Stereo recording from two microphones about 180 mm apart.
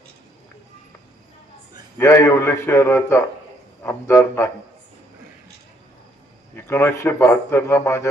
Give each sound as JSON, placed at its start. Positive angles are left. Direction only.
{"t": 2.0, "sound": "speech", "side_deg": 15}
{"t": 6.6, "sound": "speech", "side_deg": 15}